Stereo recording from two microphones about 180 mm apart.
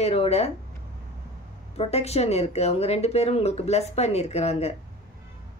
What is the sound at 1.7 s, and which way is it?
Speech, 35° left (ahead or behind).